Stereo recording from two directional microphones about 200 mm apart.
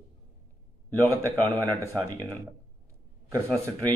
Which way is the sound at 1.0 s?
15° right (ahead or behind).